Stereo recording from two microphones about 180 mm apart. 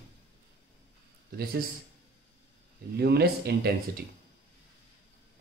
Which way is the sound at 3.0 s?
65° right (ahead or behind).